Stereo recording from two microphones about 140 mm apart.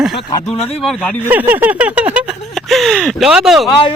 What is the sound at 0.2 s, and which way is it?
Speech, 35° left (ahead or behind).